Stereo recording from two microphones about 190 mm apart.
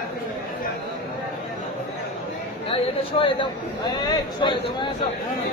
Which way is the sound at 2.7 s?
25° left (ahead or behind).